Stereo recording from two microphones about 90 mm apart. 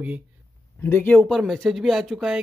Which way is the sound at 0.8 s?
20° left (ahead or behind).